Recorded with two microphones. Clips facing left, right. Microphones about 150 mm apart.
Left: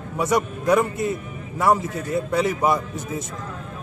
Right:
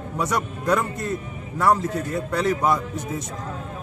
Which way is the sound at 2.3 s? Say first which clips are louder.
Even; 10° left (ahead or behind).